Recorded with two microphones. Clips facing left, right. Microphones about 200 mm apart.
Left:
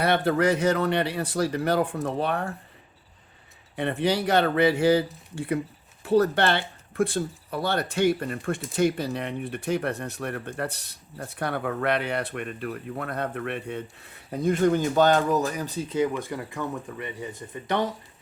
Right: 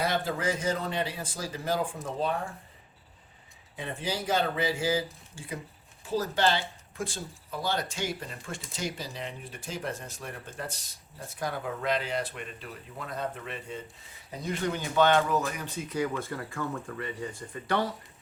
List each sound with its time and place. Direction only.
0.0 s speech: 65° left (ahead or behind)
3.8 s speech: 65° left (ahead or behind); by 16.0 s 35° left (ahead or behind)
16.0 s speech: 15° left (ahead or behind)